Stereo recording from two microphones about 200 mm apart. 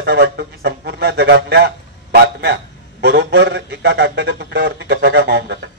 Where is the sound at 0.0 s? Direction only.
55° right (ahead or behind).